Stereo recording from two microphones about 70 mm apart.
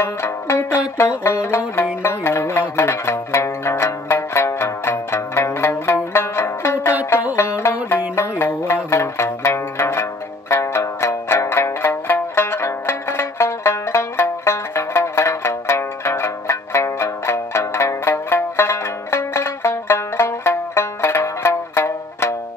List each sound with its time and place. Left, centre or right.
0.0 s music: left